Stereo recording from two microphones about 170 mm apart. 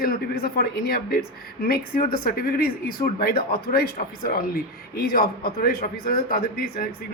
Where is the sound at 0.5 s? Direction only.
65° left (ahead or behind).